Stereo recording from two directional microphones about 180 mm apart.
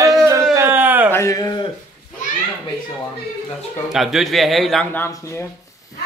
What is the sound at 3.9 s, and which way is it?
A man's voice, centre (ahead or behind).